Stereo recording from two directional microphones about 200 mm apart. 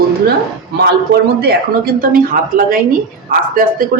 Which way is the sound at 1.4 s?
50° right (ahead or behind).